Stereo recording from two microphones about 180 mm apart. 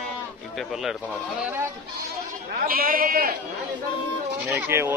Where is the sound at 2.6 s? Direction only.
55° right (ahead or behind).